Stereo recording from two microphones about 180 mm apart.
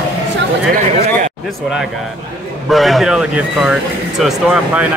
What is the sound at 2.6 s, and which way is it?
Speech, centre (ahead or behind).